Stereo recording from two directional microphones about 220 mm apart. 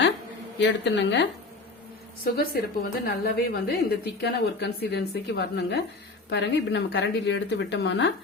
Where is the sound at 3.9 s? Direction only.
50° left (ahead or behind).